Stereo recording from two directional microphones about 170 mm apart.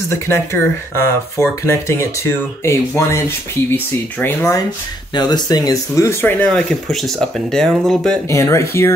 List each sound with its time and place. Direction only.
0.5 s speech: 15° left (ahead or behind)
5.1 s speech: 25° left (ahead or behind); by 8.2 s centre (ahead or behind)
8.3 s speech: 15° left (ahead or behind)